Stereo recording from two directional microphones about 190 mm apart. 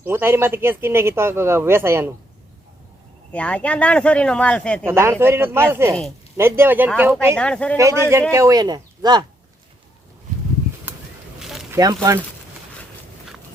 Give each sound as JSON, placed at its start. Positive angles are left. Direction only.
{"t": 0.0, "sound": "speech", "side_deg": -10}
{"t": 3.3, "sound": "speech", "side_deg": 5}
{"t": 4.9, "sound": "speech", "side_deg": -15}
{"t": 7.3, "sound": "speech", "side_deg": 5}
{"t": 7.8, "sound": "speech", "side_deg": -15}
{"t": 10.9, "sound": "a sound", "side_deg": -5}
{"t": 11.7, "sound": "speech", "side_deg": -20}